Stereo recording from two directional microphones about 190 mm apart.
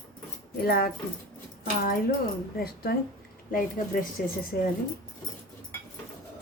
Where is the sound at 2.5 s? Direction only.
55° left (ahead or behind).